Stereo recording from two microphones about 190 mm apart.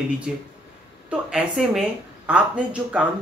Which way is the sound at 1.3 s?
5° right (ahead or behind).